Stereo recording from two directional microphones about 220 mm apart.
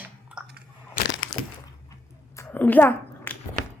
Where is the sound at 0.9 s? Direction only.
55° left (ahead or behind).